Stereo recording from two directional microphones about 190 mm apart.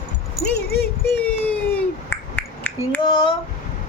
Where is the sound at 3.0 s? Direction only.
25° left (ahead or behind).